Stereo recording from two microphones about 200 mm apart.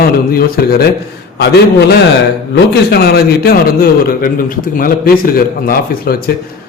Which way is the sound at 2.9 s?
50° left (ahead or behind).